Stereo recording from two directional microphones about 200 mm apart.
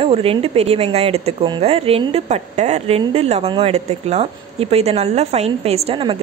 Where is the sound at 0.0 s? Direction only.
30° right (ahead or behind).